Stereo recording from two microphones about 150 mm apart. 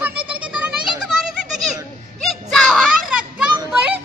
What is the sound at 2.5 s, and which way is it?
Children playing, centre (ahead or behind).